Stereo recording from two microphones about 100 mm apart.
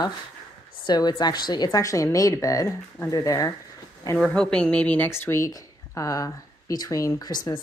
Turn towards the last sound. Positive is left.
turn(degrees=45)  # may be behind; listen again after turning